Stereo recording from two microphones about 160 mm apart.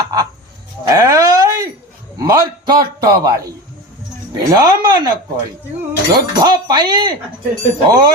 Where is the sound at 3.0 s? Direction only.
20° right (ahead or behind).